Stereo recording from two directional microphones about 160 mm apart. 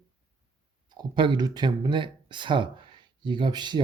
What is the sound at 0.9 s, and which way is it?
Speech, 30° right (ahead or behind).